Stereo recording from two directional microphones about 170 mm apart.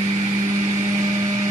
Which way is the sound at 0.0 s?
25° right (ahead or behind).